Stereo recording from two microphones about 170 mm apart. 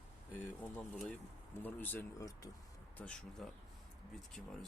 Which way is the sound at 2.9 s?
5° left (ahead or behind).